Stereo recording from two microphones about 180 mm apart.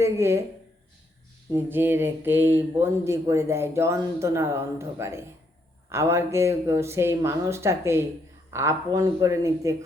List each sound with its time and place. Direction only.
0.0 s speech: 15° right (ahead or behind)
1.5 s speech: 10° right (ahead or behind)